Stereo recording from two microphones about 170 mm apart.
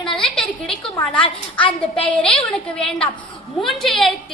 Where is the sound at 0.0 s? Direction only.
5° left (ahead or behind).